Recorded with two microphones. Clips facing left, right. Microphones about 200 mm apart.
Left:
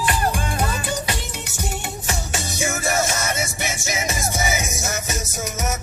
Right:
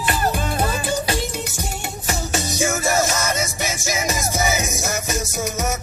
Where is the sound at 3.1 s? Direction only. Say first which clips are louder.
Right 2 dB; 40° right (ahead or behind).